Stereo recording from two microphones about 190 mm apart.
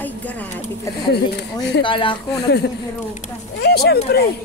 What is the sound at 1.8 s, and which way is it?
Speech, 25° left (ahead or behind).